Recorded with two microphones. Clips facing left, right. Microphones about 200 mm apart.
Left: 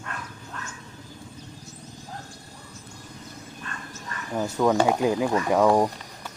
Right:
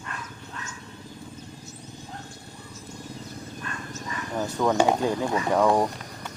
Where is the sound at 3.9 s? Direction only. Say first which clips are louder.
Left 1 dB; 5° left (ahead or behind).